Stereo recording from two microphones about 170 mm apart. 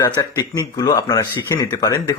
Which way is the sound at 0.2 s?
20° left (ahead or behind).